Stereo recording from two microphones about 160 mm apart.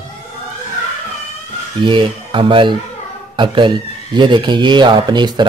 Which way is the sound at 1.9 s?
30° right (ahead or behind).